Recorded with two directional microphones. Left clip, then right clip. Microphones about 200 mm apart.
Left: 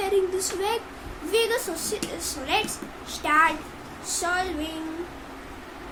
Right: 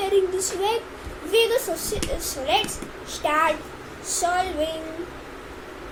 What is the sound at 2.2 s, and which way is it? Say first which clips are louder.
A child's voice: right 3 dB; 15° left (ahead or behind).